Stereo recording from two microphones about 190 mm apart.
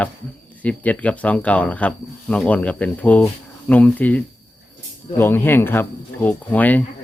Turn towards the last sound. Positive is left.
turn(degrees=10)  # may be behind; listen again after turning